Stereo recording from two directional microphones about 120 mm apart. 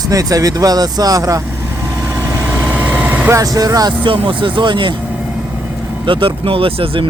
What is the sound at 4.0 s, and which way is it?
Speech, 45° right (ahead or behind).